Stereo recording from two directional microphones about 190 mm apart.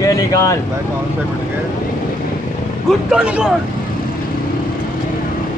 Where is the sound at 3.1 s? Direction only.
5° right (ahead or behind).